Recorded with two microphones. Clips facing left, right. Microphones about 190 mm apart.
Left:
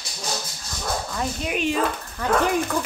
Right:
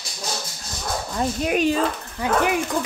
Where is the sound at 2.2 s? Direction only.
10° right (ahead or behind).